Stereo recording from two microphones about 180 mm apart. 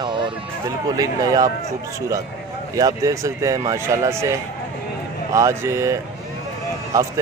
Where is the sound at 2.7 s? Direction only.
20° right (ahead or behind).